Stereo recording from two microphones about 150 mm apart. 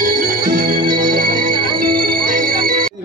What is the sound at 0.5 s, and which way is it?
Organ, 90° right.